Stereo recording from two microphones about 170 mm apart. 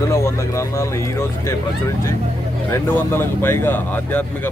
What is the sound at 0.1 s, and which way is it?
Speech, 15° left (ahead or behind).